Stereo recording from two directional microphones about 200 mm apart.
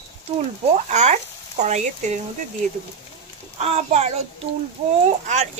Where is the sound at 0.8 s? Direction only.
35° right (ahead or behind).